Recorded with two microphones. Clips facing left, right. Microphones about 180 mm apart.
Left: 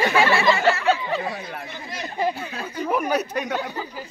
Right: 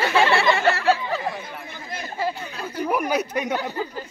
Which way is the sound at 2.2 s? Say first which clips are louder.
Left 2 dB; 15° left (ahead or behind).